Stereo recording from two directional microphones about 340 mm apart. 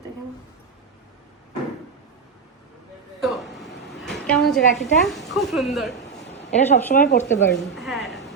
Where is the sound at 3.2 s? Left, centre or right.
Centre.